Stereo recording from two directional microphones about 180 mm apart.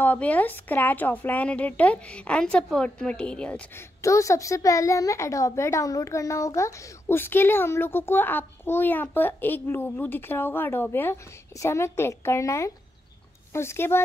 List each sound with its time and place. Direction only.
0.0 s a child's voice: 10° left (ahead or behind)
4.0 s a child's voice: 15° left (ahead or behind)